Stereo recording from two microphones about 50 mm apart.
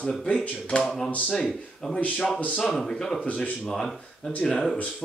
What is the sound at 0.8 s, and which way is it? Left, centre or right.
Speech, centre.